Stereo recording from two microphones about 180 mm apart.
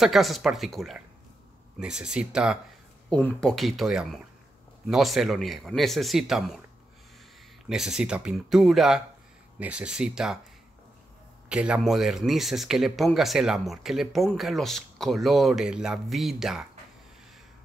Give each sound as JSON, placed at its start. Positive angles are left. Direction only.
{"t": 0.0, "sound": "speech", "side_deg": 0}
{"t": 3.1, "sound": "speech", "side_deg": 5}
{"t": 7.6, "sound": "speech", "side_deg": 0}
{"t": 11.4, "sound": "speech", "side_deg": -5}